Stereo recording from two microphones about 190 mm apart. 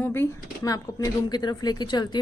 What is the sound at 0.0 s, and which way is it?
Speech, 10° left (ahead or behind).